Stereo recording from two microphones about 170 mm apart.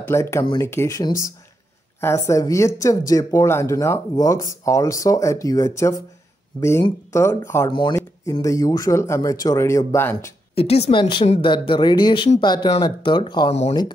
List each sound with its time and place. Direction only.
0.0 s speech: 15° left (ahead or behind)
10.5 s speech: 35° left (ahead or behind)
13.5 s speech: 40° left (ahead or behind)